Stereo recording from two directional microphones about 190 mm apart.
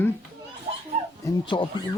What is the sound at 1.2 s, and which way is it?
Speech, 25° left (ahead or behind).